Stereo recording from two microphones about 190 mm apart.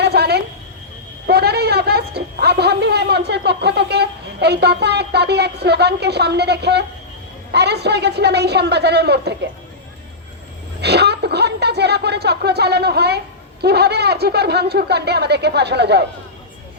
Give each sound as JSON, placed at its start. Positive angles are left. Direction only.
{"t": 0.0, "sound": "a sound", "side_deg": -60}
{"t": 1.3, "sound": "a man's voice", "side_deg": -55}
{"t": 10.8, "sound": "speech", "side_deg": -60}